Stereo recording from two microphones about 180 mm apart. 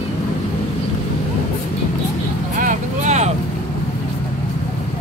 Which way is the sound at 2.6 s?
45° right (ahead or behind).